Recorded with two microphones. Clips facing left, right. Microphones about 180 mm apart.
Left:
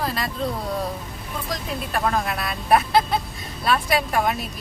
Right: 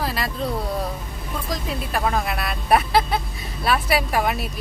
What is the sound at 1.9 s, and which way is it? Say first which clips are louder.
Speech: even; centre (ahead or behind).